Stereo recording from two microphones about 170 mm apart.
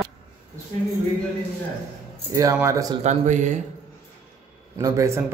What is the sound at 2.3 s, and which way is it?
Speech, 20° right (ahead or behind).